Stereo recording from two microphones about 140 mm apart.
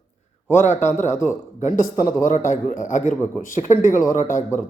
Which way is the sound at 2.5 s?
65° left (ahead or behind).